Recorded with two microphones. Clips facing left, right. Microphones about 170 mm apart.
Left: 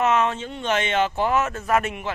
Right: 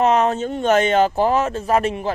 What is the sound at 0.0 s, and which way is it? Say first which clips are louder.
Speech: right 5 dB; 35° right (ahead or behind).